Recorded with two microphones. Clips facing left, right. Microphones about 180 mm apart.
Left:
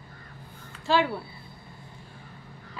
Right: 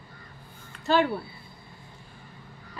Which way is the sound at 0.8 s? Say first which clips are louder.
Right 1 dB; centre (ahead or behind).